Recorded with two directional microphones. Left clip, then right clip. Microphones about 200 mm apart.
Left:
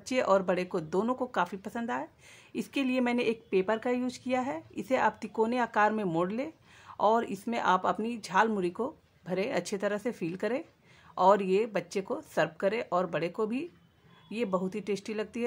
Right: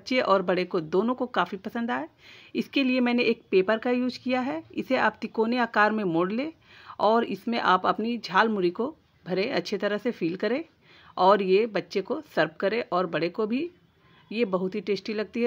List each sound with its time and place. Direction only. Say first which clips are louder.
0.0 s speech: right 3 dB; 15° right (ahead or behind)